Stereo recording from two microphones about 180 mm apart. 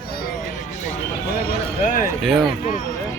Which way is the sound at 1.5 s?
45° left (ahead or behind).